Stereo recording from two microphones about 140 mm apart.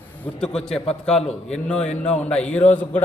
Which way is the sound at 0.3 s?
5° left (ahead or behind).